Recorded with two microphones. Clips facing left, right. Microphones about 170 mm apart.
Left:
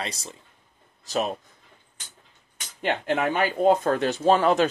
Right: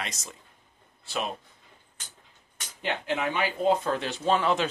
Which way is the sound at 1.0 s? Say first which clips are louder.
Left 6 dB; 40° left (ahead or behind).